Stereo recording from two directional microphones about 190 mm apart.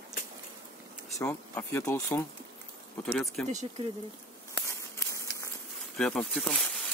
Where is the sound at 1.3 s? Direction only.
10° left (ahead or behind).